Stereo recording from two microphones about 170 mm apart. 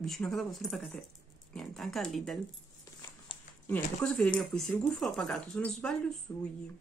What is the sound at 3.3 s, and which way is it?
Dog, 30° left (ahead or behind).